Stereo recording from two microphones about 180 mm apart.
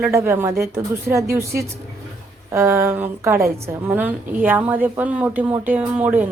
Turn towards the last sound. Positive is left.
turn(degrees=-10)  # may be behind; listen again after turning